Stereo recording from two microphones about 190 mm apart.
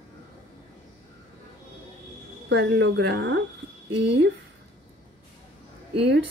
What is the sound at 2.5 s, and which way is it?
A woman's voice, 70° right (ahead or behind).